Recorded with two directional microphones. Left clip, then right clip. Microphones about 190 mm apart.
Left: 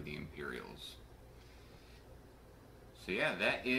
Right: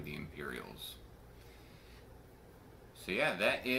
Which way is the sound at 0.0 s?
15° right (ahead or behind).